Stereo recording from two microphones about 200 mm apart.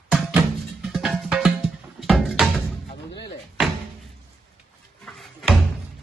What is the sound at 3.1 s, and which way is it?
Door, 55° left (ahead or behind).